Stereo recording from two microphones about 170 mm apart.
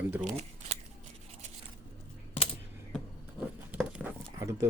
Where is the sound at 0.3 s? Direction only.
40° right (ahead or behind).